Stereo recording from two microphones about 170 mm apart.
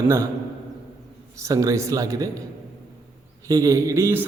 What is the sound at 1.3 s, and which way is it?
A man's voice, 20° right (ahead or behind).